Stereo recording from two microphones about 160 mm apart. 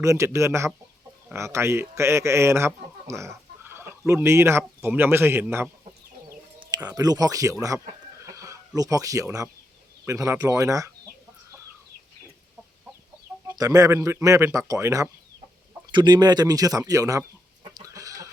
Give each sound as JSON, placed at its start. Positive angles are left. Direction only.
{"t": 0.0, "sound": "speech", "side_deg": -20}
{"t": 6.2, "sound": "chicken", "side_deg": -25}
{"t": 6.8, "sound": "speech", "side_deg": -25}
{"t": 8.3, "sound": "a sound", "side_deg": -20}
{"t": 10.1, "sound": "speech", "side_deg": -20}
{"t": 13.5, "sound": "speech", "side_deg": -20}
{"t": 15.9, "sound": "speech", "side_deg": -30}
{"t": 17.7, "sound": "chicken", "side_deg": -20}